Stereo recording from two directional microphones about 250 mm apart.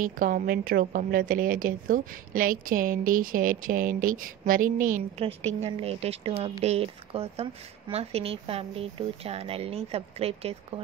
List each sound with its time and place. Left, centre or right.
0.0 s a woman's voice: right